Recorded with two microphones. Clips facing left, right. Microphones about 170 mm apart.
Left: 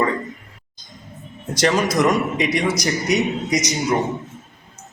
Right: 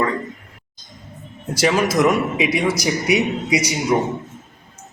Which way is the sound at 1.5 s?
5° right (ahead or behind).